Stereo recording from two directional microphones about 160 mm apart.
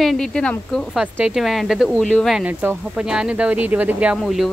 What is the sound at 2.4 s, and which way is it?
Speech, 10° right (ahead or behind).